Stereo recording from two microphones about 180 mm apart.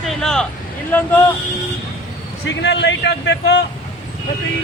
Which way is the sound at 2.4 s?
70° left (ahead or behind).